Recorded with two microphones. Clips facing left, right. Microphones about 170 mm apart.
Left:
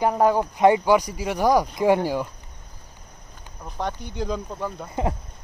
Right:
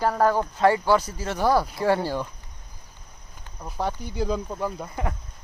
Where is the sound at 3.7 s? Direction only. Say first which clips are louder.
Right 1 dB; 5° right (ahead or behind).